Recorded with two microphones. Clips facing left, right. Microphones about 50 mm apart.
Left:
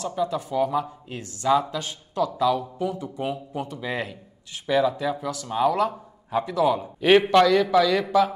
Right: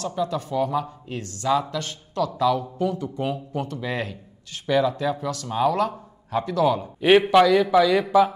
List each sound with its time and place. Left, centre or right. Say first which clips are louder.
0.0 s speech: even; centre
2.3 s a man's voice: right 3 dB; centre
7.0 s a man's voice: right 1 dB; centre